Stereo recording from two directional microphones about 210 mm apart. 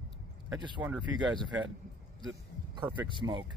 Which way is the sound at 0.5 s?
20° right (ahead or behind).